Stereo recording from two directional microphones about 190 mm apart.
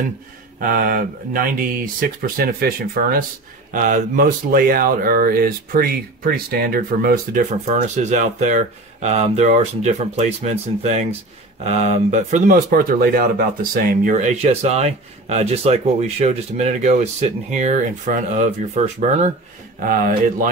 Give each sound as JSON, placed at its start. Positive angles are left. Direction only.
{"t": 0.6, "sound": "speech", "side_deg": -45}
{"t": 7.5, "sound": "speech", "side_deg": -35}
{"t": 12.6, "sound": "speech", "side_deg": -50}